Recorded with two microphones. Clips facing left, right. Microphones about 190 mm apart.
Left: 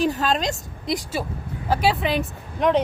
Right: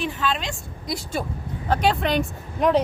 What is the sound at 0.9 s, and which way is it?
Speech, 25° left (ahead or behind).